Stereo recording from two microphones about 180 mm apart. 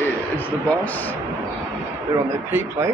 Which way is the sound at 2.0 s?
15° right (ahead or behind).